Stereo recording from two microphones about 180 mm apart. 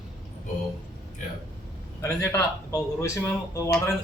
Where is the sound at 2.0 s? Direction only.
15° left (ahead or behind).